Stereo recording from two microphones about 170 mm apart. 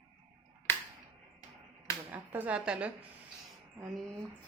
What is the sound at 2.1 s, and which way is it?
Speech, 10° right (ahead or behind).